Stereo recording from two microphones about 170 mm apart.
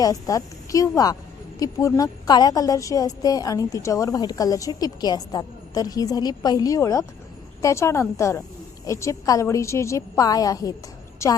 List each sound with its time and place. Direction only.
0.0 s a woman's voice: 20° left (ahead or behind)